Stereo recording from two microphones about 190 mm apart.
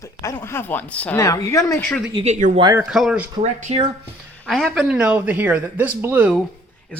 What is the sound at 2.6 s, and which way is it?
Speech, 20° right (ahead or behind).